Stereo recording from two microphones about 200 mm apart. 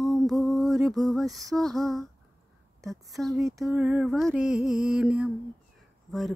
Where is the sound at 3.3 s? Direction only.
15° right (ahead or behind).